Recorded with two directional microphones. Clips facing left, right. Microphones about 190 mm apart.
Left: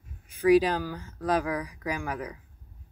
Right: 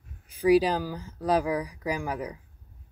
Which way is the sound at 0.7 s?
10° right (ahead or behind).